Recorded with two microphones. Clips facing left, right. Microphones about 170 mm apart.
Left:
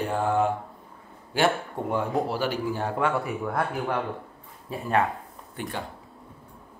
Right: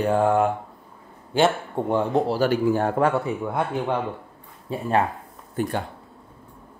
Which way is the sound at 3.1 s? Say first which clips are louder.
Right 4 dB; centre (ahead or behind).